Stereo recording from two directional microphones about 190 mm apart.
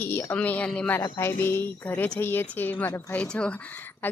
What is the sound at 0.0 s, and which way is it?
Speech, 10° left (ahead or behind).